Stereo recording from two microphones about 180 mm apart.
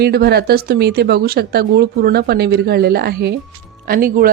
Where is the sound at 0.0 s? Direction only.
60° right (ahead or behind).